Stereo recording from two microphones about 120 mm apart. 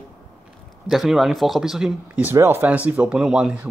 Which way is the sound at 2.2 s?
20° right (ahead or behind).